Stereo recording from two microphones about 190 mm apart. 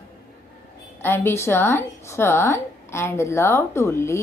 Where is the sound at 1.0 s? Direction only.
10° left (ahead or behind).